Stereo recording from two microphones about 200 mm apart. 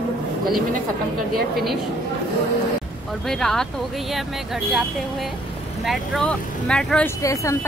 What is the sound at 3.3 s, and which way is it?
Speech, centre (ahead or behind).